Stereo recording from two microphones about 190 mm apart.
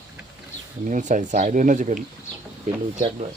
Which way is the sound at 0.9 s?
40° right (ahead or behind).